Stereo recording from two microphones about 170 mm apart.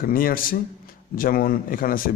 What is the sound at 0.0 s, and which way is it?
A man's voice, 55° left (ahead or behind).